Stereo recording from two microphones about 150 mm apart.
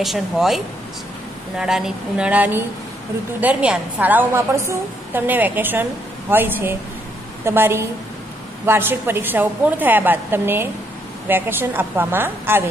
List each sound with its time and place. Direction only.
0.0 s a woman's voice: centre (ahead or behind)
1.6 s a woman's voice: 5° right (ahead or behind)